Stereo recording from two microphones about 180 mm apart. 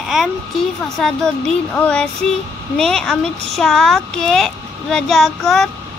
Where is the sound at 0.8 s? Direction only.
5° left (ahead or behind).